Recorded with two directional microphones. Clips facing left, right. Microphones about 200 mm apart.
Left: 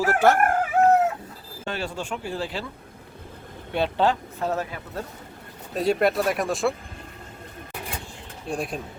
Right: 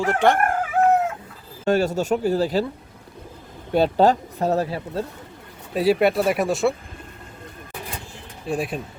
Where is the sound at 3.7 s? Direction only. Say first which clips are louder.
Right 6 dB; 40° right (ahead or behind).